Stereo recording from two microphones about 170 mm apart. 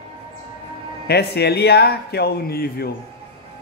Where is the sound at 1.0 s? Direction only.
75° left (ahead or behind).